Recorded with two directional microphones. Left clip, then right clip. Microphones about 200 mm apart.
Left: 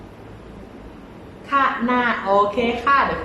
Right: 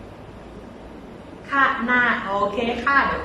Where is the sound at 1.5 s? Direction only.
20° left (ahead or behind).